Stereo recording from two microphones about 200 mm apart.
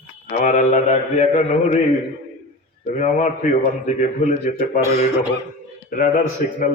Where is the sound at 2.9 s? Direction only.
40° left (ahead or behind).